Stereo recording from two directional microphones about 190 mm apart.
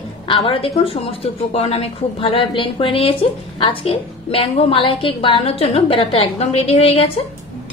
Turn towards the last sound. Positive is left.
turn(degrees=30)  # may be behind; listen again after turning